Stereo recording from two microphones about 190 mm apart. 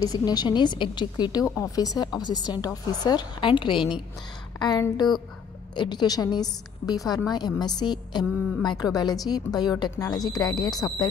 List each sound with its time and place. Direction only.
0.0 s a woman's voice: 20° left (ahead or behind)
4.6 s a woman's voice: 20° left (ahead or behind)